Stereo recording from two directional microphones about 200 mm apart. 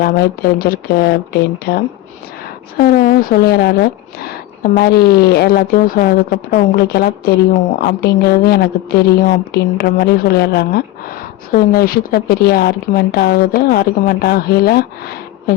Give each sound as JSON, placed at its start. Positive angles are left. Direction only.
{"t": 0.0, "sound": "speech", "side_deg": 50}